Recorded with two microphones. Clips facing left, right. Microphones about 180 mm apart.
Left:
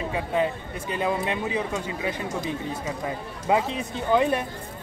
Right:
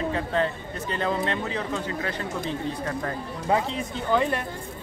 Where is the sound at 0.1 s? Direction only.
10° left (ahead or behind).